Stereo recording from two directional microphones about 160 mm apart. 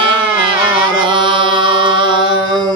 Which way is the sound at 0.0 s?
30° right (ahead or behind).